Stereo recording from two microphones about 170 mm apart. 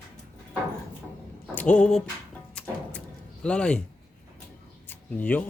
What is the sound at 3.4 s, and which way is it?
Speech, 5° left (ahead or behind).